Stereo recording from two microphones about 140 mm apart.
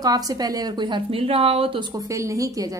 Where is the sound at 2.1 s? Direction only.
20° right (ahead or behind).